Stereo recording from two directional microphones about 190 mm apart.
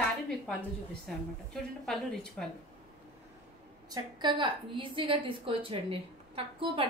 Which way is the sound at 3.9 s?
25° right (ahead or behind).